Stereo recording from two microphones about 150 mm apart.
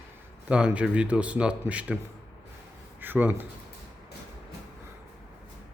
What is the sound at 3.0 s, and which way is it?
Speech, 10° right (ahead or behind).